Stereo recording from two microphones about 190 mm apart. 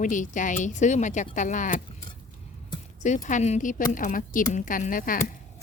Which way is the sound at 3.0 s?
40° left (ahead or behind).